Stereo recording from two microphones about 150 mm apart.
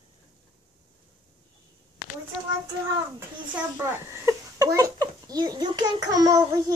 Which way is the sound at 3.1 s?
15° right (ahead or behind).